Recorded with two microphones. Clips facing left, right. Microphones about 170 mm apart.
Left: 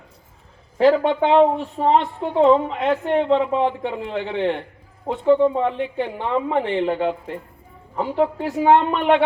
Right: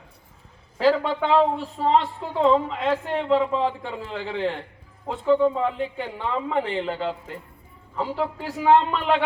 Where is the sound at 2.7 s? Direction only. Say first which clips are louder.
Left 5 dB; 30° right (ahead or behind).